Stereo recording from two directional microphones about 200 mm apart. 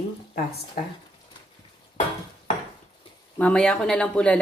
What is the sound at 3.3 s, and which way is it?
Speech, 5° left (ahead or behind).